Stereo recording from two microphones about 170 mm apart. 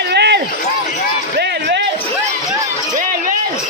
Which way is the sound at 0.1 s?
75° right (ahead or behind).